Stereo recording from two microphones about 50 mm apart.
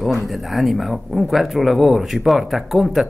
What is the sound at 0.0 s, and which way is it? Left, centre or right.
Speech, centre.